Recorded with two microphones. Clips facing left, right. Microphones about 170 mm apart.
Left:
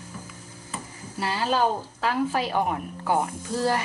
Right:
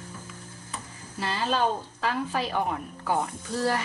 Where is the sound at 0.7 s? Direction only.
10° left (ahead or behind).